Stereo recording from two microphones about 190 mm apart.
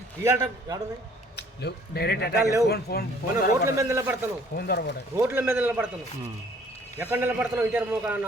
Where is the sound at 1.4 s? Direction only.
60° left (ahead or behind).